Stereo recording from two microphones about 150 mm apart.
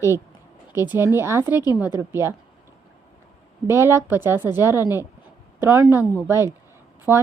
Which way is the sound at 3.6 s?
15° right (ahead or behind).